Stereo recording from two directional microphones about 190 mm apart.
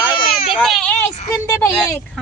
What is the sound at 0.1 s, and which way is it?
Baby cry, centre (ahead or behind).